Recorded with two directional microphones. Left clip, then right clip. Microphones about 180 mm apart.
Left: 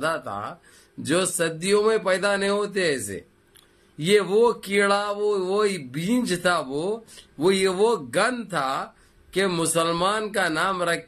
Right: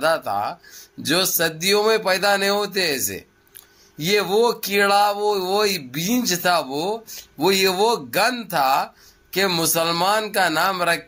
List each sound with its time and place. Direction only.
0.0 s speech: 15° left (ahead or behind)